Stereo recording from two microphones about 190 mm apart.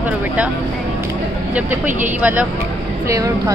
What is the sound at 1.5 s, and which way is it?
A woman's voice, 10° right (ahead or behind).